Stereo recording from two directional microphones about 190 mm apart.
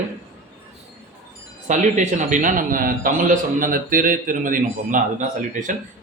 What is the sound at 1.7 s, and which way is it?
A man's voice, 40° right (ahead or behind).